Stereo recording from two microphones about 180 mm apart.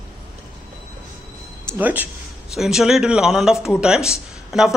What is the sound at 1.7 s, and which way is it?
Speech, 10° right (ahead or behind).